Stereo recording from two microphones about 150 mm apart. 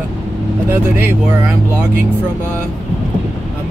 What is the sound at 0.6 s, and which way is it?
Speech, 15° right (ahead or behind).